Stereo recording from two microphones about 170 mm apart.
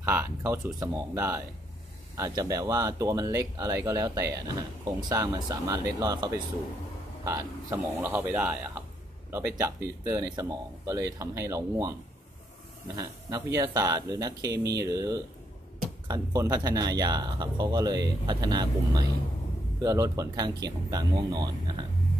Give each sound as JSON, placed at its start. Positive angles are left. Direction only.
{"t": 0.0, "sound": "speech", "side_deg": -15}
{"t": 12.9, "sound": "speech", "side_deg": -20}